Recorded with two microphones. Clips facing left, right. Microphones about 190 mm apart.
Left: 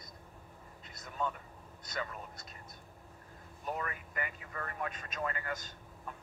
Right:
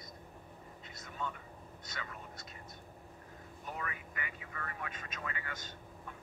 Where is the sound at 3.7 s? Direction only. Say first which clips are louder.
Left 3 dB; 45° left (ahead or behind).